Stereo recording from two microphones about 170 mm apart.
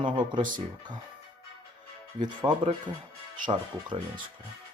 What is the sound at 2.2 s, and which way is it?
Speech, 25° right (ahead or behind).